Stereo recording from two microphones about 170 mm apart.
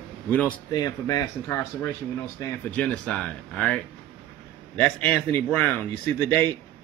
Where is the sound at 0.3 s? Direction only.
10° left (ahead or behind).